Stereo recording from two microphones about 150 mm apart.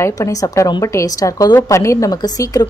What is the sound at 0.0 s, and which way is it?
A woman's voice, 20° left (ahead or behind).